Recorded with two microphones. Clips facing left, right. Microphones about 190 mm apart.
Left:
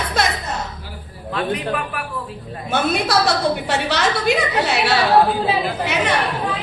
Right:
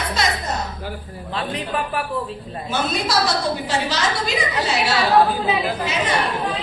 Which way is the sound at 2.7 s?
60° left (ahead or behind).